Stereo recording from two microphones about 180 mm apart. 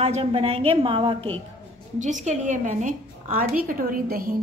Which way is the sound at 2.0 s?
45° right (ahead or behind).